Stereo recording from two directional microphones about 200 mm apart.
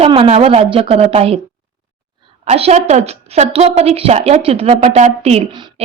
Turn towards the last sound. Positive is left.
turn(degrees=-35)  # may be behind; listen again after turning